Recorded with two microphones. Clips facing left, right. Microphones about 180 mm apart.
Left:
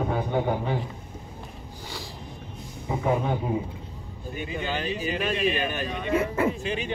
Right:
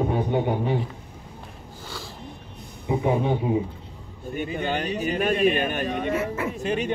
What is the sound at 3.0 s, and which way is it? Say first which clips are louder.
Speech: right 2 dB; 20° right (ahead or behind).